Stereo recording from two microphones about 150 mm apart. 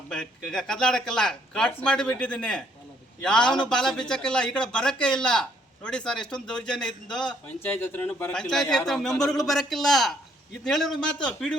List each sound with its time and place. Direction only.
0.1 s a man's voice: 5° left (ahead or behind)